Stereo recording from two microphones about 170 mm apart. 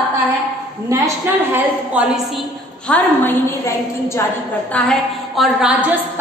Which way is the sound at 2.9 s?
10° left (ahead or behind).